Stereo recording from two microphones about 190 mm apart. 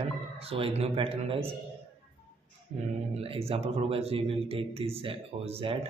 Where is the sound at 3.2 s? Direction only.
30° right (ahead or behind).